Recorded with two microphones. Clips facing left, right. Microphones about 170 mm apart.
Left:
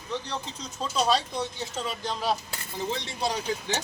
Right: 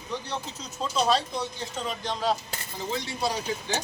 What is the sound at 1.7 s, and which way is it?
Speech, 5° left (ahead or behind).